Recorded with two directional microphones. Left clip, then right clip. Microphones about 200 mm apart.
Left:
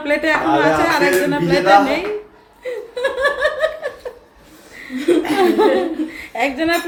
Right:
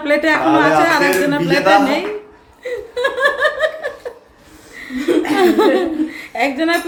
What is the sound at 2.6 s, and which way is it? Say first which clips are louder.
Laughter: right 2 dB; 15° right (ahead or behind).